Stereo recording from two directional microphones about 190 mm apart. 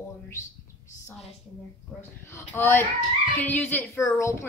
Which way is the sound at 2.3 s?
15° left (ahead or behind).